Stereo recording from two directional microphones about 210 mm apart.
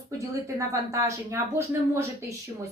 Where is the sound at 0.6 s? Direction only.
15° right (ahead or behind).